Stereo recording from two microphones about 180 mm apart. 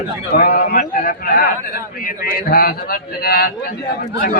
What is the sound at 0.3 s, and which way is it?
A man's voice, 55° left (ahead or behind).